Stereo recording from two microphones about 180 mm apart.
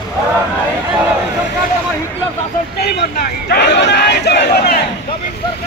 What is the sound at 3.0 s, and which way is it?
Speech, 65° left (ahead or behind).